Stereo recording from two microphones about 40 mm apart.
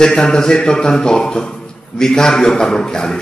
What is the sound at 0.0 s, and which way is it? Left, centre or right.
A man's voice, centre.